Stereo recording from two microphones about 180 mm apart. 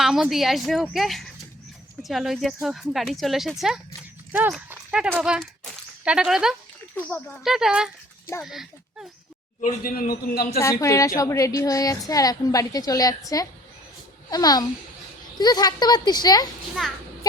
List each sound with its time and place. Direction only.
0.0 s speech: 5° right (ahead or behind)
6.9 s a child's voice: 10° left (ahead or behind)
7.4 s speech: centre (ahead or behind)
9.6 s a man's voice: 50° left (ahead or behind)
10.6 s a woman's voice: 15° left (ahead or behind)